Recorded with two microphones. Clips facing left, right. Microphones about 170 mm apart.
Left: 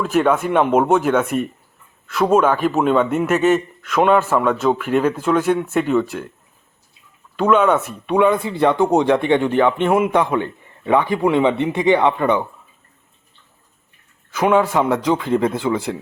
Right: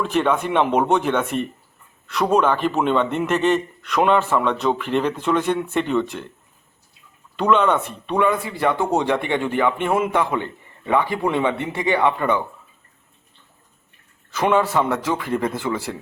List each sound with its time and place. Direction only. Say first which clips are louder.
0.0 s a man's voice: left 3 dB; 5° left (ahead or behind)
7.3 s speech: left 3 dB; 5° left (ahead or behind)
14.3 s speech: left 3 dB; 10° left (ahead or behind)